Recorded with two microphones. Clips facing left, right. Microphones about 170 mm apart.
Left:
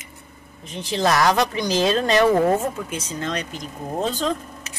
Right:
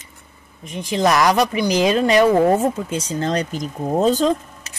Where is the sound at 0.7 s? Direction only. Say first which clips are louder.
Right 3 dB; 15° right (ahead or behind); by 4.7 s 40° right (ahead or behind).